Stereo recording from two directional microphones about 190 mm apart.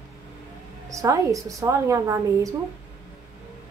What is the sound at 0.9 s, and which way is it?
A woman's voice, 15° right (ahead or behind).